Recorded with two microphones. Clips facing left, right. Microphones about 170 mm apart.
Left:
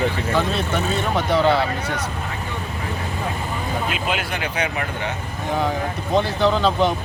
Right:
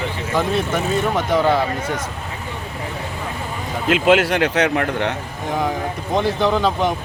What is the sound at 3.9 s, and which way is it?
Speech, 90° right.